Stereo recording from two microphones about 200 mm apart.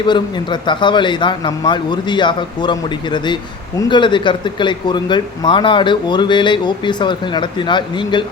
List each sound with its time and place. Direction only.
0.0 s speech: 20° left (ahead or behind)